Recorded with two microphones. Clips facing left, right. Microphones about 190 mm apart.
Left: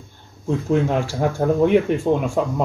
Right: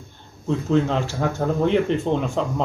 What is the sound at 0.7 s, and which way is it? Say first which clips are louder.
Speech: left 1 dB; 10° left (ahead or behind).